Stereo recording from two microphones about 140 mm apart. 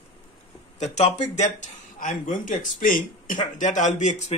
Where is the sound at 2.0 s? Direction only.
70° left (ahead or behind).